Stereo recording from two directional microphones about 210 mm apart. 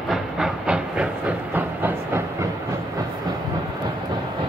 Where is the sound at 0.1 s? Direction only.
Centre (ahead or behind).